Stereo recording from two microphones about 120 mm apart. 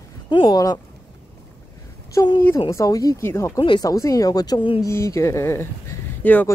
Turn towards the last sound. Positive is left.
turn(degrees=15)  # may be behind; listen again after turning